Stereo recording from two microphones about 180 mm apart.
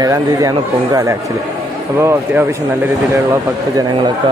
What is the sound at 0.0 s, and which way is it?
Speech, 20° right (ahead or behind).